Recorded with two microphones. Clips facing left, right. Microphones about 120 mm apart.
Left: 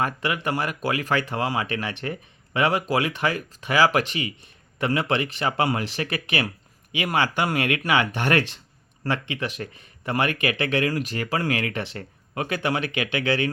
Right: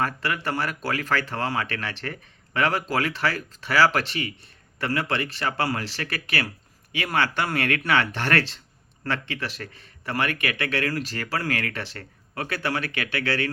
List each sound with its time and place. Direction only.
0.0 s speech: 15° left (ahead or behind)